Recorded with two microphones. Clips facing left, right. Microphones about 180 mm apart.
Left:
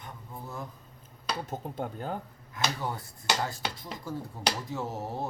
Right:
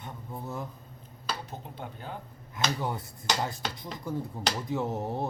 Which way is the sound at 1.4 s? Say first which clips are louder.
Left 6 dB; 45° left (ahead or behind).